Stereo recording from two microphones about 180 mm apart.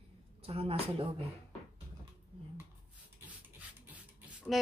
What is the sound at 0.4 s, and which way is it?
Speech, 35° right (ahead or behind).